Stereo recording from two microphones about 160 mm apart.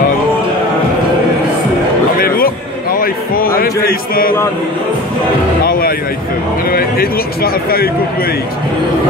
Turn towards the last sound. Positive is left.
turn(degrees=70)  # may be behind; listen again after turning